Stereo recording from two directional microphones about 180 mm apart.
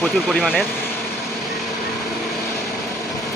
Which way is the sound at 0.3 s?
Centre (ahead or behind).